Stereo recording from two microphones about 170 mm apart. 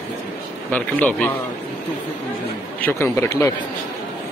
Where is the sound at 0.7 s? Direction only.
10° left (ahead or behind).